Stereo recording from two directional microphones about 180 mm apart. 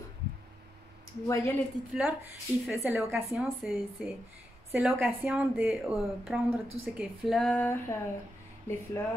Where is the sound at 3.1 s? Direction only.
Centre (ahead or behind).